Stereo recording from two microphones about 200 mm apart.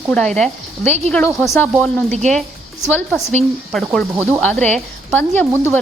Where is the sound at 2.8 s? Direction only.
10° left (ahead or behind).